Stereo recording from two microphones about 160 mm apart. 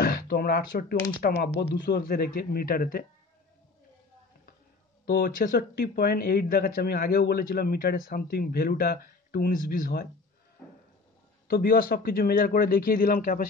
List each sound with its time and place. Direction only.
0.0 s speech: 70° left (ahead or behind)
5.0 s speech: 65° left (ahead or behind)
11.4 s speech: 70° left (ahead or behind)